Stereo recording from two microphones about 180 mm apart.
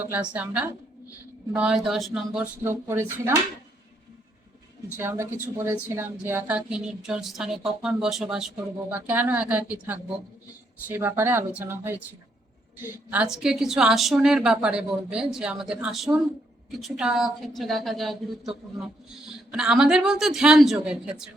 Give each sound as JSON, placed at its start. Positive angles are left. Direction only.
{"t": 0.0, "sound": "a woman's voice", "side_deg": -10}
{"t": 4.9, "sound": "speech", "side_deg": -15}
{"t": 13.1, "sound": "a woman's voice", "side_deg": -5}